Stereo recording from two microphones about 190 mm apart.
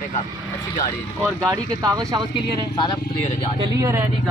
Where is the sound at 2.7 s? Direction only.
25° left (ahead or behind).